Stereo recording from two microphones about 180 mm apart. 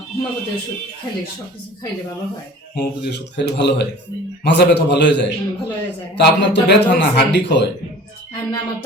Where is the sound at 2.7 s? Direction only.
70° left (ahead or behind).